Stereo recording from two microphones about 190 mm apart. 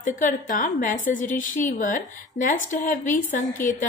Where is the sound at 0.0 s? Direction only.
45° left (ahead or behind).